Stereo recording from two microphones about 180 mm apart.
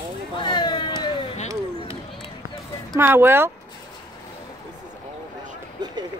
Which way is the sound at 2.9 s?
10° right (ahead or behind).